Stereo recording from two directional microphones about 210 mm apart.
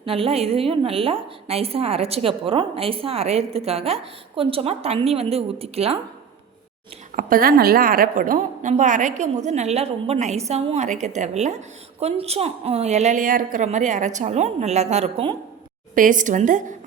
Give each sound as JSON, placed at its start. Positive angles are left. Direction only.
{"t": 0.0, "sound": "a woman's voice", "side_deg": -25}
{"t": 7.2, "sound": "speech", "side_deg": -45}
{"t": 16.0, "sound": "speech", "side_deg": -40}